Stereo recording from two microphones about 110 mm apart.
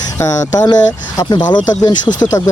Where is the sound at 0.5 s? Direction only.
35° left (ahead or behind).